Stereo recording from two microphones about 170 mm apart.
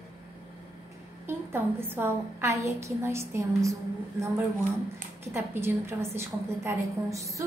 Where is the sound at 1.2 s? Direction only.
15° right (ahead or behind).